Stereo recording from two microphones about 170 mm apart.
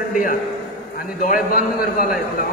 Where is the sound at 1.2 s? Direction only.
55° left (ahead or behind).